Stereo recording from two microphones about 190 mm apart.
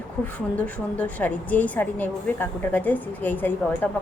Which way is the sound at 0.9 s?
10° left (ahead or behind).